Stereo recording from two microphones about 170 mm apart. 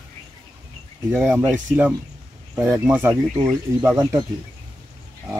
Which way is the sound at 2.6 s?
15° right (ahead or behind).